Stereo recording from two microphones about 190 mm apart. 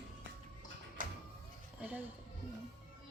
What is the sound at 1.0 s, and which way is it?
Music, 45° right (ahead or behind).